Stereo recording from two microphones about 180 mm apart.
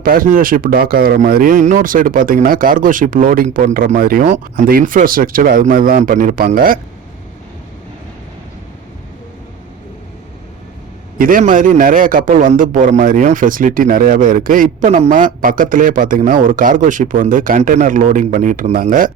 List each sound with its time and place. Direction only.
0.0 s speech: 50° right (ahead or behind)
11.2 s speech: 50° right (ahead or behind)